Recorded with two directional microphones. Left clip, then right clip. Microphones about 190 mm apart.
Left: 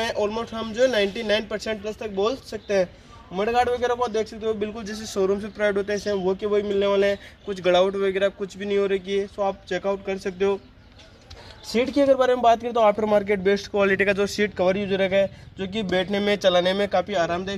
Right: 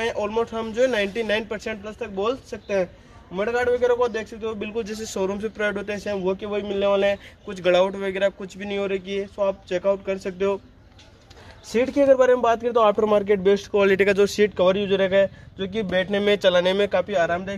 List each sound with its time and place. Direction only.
0.0 s speech: 10° right (ahead or behind)
3.7 s a man's voice: 25° right (ahead or behind)
11.8 s speech: 20° right (ahead or behind)